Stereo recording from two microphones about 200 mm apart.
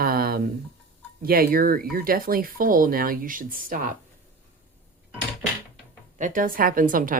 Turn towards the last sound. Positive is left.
turn(degrees=-45)  # may be behind; listen again after turning